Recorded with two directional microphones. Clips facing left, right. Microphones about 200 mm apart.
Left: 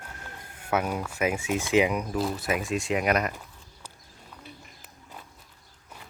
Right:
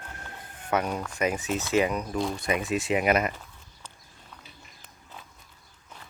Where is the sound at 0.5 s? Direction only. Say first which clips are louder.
Even; 10° left (ahead or behind).